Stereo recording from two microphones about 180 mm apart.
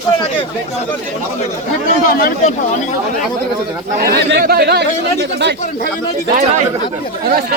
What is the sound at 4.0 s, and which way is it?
Speech, 60° right (ahead or behind).